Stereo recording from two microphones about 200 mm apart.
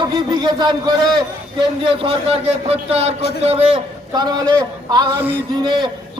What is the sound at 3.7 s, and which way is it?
A man's voice, 20° right (ahead or behind).